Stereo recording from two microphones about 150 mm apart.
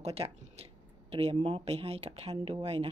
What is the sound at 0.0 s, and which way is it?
Speech, 45° right (ahead or behind).